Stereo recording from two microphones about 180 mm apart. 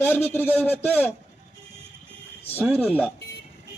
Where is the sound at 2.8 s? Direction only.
10° left (ahead or behind).